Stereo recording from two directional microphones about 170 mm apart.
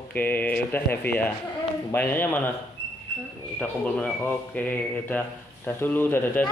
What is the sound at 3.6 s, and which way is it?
Speech, 10° left (ahead or behind).